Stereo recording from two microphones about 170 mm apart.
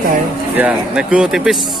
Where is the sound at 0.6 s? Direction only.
5° right (ahead or behind).